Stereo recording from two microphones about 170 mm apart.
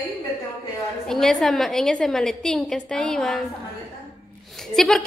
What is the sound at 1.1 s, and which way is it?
A woman's voice, centre (ahead or behind).